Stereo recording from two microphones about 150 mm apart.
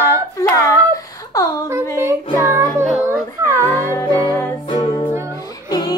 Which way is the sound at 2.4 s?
20° right (ahead or behind).